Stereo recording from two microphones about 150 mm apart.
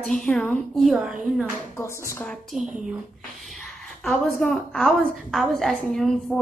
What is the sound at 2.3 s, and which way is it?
A woman's voice, centre (ahead or behind).